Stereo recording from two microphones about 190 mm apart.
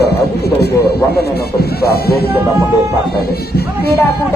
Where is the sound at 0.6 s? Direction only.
55° left (ahead or behind).